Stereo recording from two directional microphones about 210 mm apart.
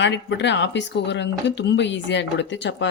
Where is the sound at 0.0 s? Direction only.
55° left (ahead or behind).